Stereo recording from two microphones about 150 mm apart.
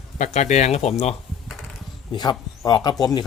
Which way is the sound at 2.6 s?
25° left (ahead or behind).